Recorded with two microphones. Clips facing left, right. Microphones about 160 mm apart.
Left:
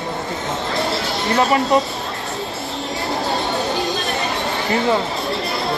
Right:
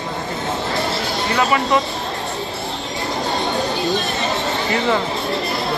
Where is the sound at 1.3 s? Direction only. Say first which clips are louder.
Left 2 dB; 40° left (ahead or behind).